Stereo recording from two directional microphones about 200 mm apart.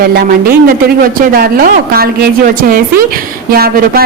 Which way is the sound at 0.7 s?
45° right (ahead or behind).